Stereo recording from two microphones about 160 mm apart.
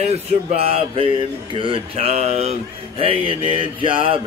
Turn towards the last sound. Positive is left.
turn(degrees=-35)  # may be behind; listen again after turning